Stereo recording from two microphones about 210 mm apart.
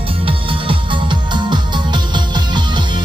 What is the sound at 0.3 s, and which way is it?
Music, 25° right (ahead or behind).